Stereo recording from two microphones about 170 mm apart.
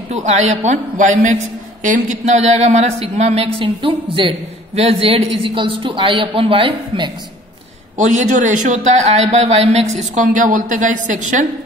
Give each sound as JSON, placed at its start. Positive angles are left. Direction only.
{"t": 0.1, "sound": "a man's voice", "side_deg": -45}
{"t": 8.0, "sound": "a man's voice", "side_deg": -45}